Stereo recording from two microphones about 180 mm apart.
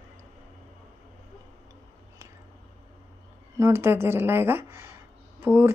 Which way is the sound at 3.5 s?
15° right (ahead or behind).